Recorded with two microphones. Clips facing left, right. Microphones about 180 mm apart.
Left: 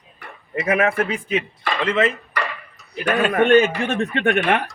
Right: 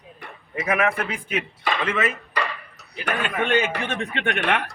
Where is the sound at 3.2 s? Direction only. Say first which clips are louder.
Left 8 dB; 45° left (ahead or behind).